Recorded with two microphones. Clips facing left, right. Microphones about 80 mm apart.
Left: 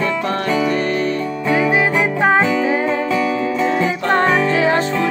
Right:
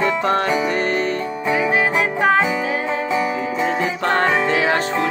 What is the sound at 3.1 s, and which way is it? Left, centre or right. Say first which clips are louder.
Music: left 3 dB; right.